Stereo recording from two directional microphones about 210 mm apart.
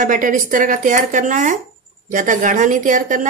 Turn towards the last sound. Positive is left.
turn(degrees=-40)  # may be behind; listen again after turning